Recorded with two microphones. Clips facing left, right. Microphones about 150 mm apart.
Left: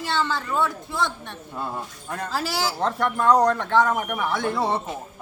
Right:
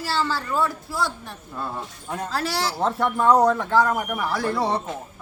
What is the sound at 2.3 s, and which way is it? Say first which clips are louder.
A woman's voice: even; centre (ahead or behind).